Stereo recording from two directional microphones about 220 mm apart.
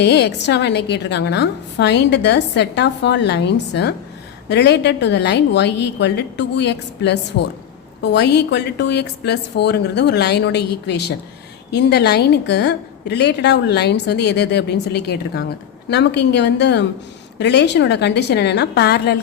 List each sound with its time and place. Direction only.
0.0 s a woman's voice: 50° left (ahead or behind)